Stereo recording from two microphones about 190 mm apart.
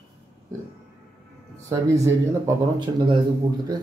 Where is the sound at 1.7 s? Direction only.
15° right (ahead or behind).